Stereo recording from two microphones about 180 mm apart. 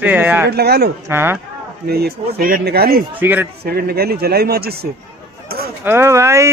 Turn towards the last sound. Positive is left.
turn(degrees=-15)  # may be behind; listen again after turning